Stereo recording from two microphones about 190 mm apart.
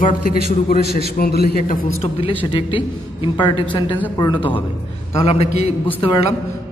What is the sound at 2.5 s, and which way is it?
A man's voice, 25° left (ahead or behind).